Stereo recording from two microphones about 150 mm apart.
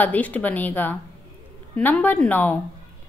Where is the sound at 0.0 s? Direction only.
10° left (ahead or behind).